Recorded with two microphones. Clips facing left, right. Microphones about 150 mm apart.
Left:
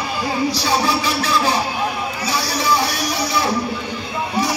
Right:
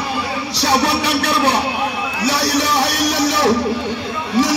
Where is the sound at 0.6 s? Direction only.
70° right (ahead or behind).